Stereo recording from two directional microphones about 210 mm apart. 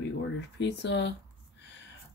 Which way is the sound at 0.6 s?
55° left (ahead or behind).